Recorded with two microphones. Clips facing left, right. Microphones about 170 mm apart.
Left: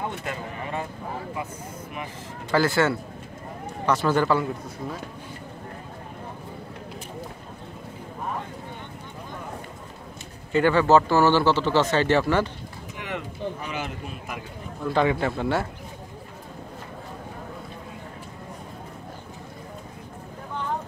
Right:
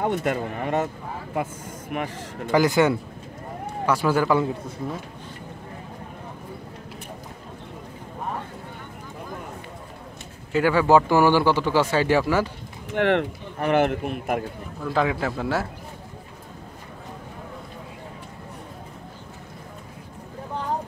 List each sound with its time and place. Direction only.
0.0 s speech: 50° right (ahead or behind)
1.3 s speech: 60° right (ahead or behind)
2.5 s speech: 15° right (ahead or behind)
10.5 s speech: 5° right (ahead or behind)
12.9 s speech: 65° right (ahead or behind)
14.8 s a man's voice: centre (ahead or behind)